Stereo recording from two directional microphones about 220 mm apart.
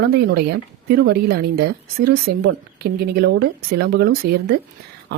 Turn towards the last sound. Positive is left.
turn(degrees=-45)  # may be behind; listen again after turning